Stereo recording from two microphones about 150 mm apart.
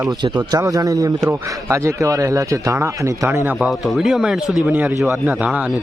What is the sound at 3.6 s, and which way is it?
A man's voice, centre (ahead or behind).